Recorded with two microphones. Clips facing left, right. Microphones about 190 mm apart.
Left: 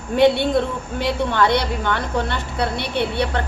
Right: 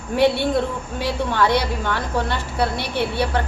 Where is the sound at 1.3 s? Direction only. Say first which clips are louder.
Right 1 dB; 60° left (ahead or behind).